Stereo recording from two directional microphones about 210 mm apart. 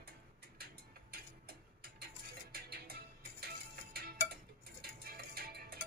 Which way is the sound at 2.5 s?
50° right (ahead or behind).